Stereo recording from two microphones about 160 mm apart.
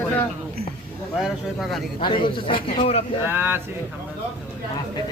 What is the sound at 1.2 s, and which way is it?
Speech, centre (ahead or behind).